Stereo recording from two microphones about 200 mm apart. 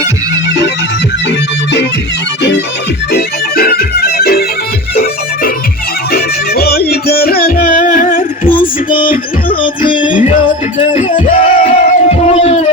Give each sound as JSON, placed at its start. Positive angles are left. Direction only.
{"t": 3.1, "sound": "music", "side_deg": 50}
{"t": 6.1, "sound": "music", "side_deg": 50}
{"t": 10.9, "sound": "a sound", "side_deg": 40}